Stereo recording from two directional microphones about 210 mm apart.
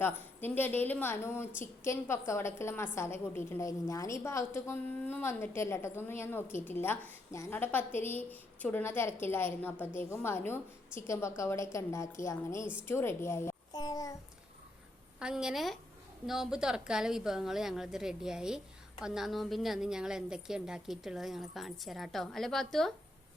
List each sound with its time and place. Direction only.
0.3 s a woman's voice: 10° left (ahead or behind)
12.9 s a sound: 10° left (ahead or behind)
15.2 s a woman's voice: 5° right (ahead or behind)